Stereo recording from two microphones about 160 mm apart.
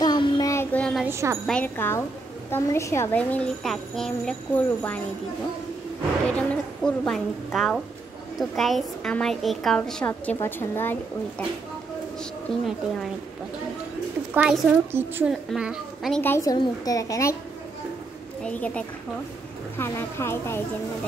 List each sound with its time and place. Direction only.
0.0 s child singing: 25° left (ahead or behind)
0.7 s a sound: 5° left (ahead or behind)
1.0 s speech: 15° right (ahead or behind)
1.4 s speech: 5° left (ahead or behind)
6.3 s a woman's voice: 5° left (ahead or behind)
12.2 s a woman's voice: centre (ahead or behind)
14.3 s a woman's voice: 10° right (ahead or behind)
16.2 s a woman's voice: 15° left (ahead or behind)
19.8 s speech: 15° left (ahead or behind)